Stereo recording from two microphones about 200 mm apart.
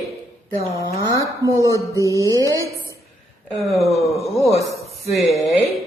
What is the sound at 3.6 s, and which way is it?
Speech, centre (ahead or behind).